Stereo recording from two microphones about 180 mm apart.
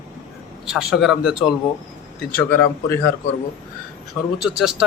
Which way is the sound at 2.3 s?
10° left (ahead or behind).